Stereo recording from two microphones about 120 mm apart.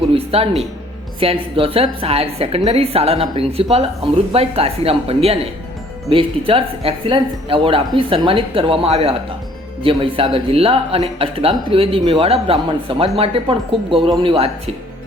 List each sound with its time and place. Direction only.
0.1 s music: 55° right (ahead or behind)
1.2 s a woman's voice: 50° right (ahead or behind)